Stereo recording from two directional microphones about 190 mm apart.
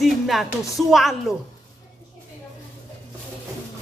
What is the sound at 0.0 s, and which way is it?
A woman's voice, centre (ahead or behind).